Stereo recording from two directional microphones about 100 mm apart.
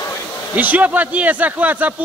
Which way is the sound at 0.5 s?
15° right (ahead or behind).